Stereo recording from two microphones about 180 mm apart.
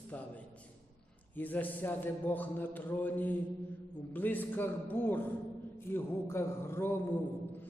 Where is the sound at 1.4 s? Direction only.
10° left (ahead or behind).